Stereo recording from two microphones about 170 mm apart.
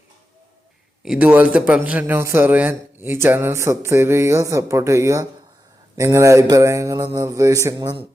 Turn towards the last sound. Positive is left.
turn(degrees=-25)  # may be behind; listen again after turning